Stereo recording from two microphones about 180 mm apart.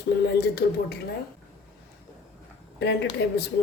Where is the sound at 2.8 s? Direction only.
70° left (ahead or behind).